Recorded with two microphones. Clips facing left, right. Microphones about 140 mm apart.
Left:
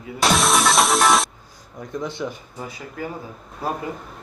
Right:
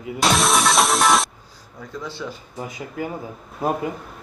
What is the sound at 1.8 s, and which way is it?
Speech, 20° left (ahead or behind).